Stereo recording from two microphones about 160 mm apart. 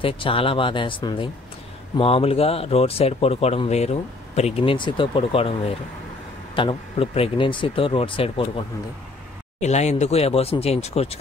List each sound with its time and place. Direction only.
0.0 s speech: 35° left (ahead or behind)
9.6 s speech: 45° left (ahead or behind)